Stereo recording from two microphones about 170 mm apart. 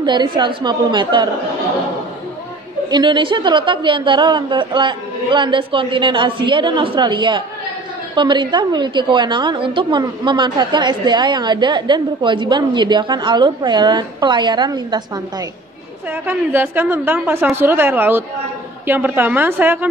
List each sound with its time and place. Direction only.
0.0 s a woman's voice: 25° right (ahead or behind)
2.9 s a woman's voice: 25° right (ahead or behind)
16.1 s a woman's voice: 10° right (ahead or behind)